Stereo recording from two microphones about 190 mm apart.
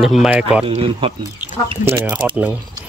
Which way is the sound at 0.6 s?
30° right (ahead or behind).